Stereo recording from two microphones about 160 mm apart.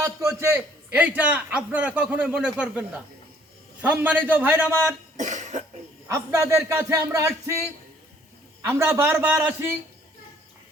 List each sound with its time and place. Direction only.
0.0 s a man's voice: 20° right (ahead or behind)
5.1 s cough: 50° right (ahead or behind)
6.1 s speech: 20° right (ahead or behind)
8.6 s a man's voice: 15° right (ahead or behind)